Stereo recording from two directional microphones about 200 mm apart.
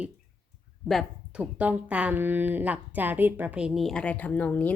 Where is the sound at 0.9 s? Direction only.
Centre (ahead or behind).